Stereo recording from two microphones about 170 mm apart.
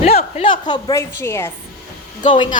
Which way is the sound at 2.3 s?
30° left (ahead or behind).